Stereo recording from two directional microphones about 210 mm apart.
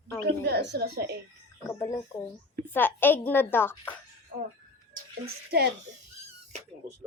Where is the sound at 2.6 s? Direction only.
10° left (ahead or behind).